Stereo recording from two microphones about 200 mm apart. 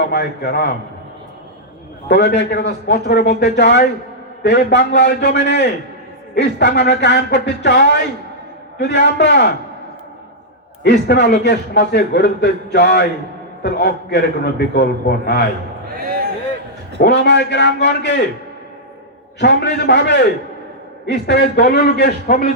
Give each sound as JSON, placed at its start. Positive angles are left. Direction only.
{"t": 0.0, "sound": "a man's voice", "side_deg": 55}
{"t": 2.0, "sound": "a man's voice", "side_deg": 60}
{"t": 10.8, "sound": "a man's voice", "side_deg": 60}
{"t": 16.0, "sound": "a sound", "side_deg": -50}
{"t": 17.0, "sound": "a man's voice", "side_deg": 60}
{"t": 19.4, "sound": "a man's voice", "side_deg": 60}